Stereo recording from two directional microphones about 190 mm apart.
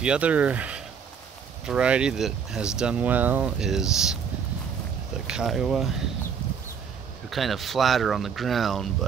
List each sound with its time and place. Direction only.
0.0 s speech: 5° right (ahead or behind)
5.2 s speech: 5° right (ahead or behind)
7.2 s speech: centre (ahead or behind)